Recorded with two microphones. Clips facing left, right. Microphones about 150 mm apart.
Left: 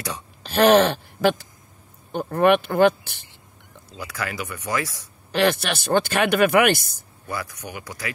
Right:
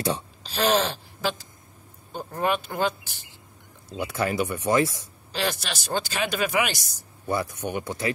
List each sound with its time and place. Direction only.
0.4 s speech: 60° left (ahead or behind)
4.0 s speech: 25° right (ahead or behind)
5.3 s speech: 60° left (ahead or behind)
7.2 s speech: 25° right (ahead or behind)